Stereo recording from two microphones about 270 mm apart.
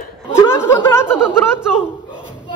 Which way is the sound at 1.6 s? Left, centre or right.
Centre.